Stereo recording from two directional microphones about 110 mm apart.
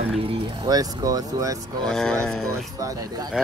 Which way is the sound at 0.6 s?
35° right (ahead or behind).